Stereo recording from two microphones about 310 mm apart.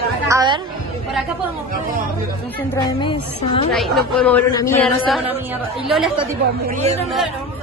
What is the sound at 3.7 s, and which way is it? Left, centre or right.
Speech, centre.